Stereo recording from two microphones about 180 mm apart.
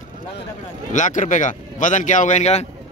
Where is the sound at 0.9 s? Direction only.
45° left (ahead or behind).